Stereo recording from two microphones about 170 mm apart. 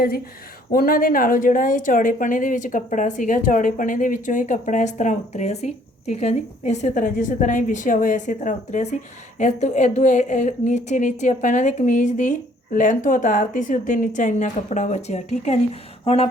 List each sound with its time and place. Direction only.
0.7 s a woman's voice: 55° left (ahead or behind); by 15.6 s 40° left (ahead or behind)